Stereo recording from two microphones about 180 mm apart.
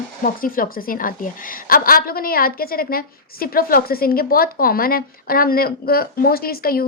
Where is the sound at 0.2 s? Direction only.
50° left (ahead or behind).